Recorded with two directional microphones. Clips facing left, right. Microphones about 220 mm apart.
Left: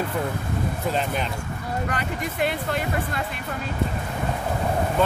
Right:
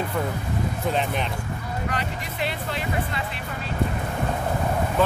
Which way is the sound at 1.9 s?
50° left (ahead or behind).